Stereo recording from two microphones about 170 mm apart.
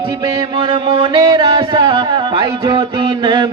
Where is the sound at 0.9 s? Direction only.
25° right (ahead or behind).